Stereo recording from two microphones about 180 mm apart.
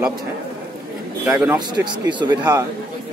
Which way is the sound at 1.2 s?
5° right (ahead or behind).